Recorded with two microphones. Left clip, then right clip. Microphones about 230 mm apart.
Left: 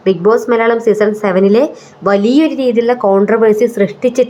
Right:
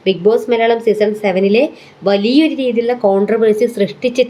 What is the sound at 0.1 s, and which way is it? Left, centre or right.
A woman's voice, centre.